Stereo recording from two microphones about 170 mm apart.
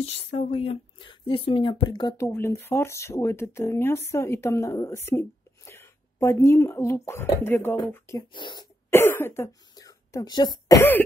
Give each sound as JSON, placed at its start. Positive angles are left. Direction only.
{"t": 0.0, "sound": "speech", "side_deg": 35}
{"t": 8.2, "sound": "speech", "side_deg": 30}
{"t": 8.9, "sound": "speech", "side_deg": 15}